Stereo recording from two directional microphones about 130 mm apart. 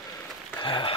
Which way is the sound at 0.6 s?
40° left (ahead or behind).